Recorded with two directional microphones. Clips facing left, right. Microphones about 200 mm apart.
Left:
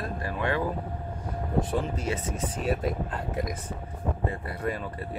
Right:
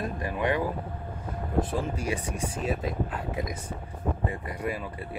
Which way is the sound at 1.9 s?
15° right (ahead or behind).